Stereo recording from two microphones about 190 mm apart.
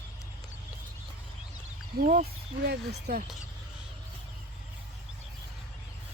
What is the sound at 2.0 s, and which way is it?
Speech, 50° right (ahead or behind).